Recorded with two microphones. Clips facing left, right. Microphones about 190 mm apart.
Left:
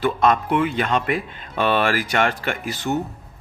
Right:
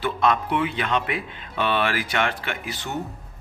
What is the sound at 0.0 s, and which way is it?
Speech, 45° left (ahead or behind).